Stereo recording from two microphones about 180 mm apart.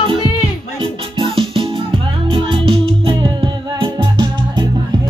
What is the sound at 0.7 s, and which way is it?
Music, 30° right (ahead or behind).